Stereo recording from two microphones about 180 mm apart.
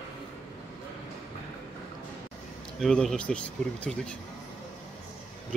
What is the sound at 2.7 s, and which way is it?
Speech, centre (ahead or behind).